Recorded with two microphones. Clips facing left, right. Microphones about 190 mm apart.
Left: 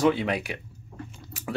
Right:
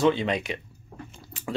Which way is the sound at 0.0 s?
10° left (ahead or behind).